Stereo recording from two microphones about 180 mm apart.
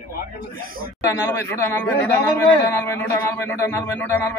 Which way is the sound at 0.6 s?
55° right (ahead or behind).